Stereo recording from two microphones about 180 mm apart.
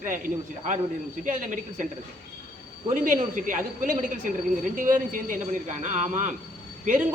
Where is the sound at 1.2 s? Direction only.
45° right (ahead or behind).